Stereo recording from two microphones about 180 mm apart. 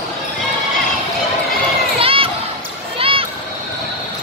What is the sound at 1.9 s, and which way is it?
Crowd, 30° right (ahead or behind).